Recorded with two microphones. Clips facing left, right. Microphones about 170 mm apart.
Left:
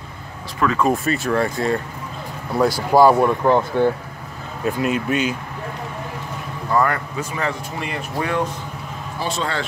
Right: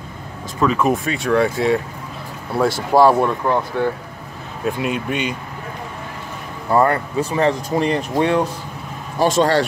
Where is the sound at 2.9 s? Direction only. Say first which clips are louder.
Even; centre (ahead or behind).